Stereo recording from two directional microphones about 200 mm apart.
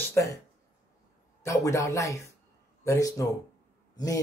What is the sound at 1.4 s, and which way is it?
Speech, 15° left (ahead or behind).